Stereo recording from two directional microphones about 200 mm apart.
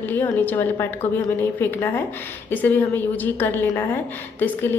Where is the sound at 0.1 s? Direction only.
10° left (ahead or behind).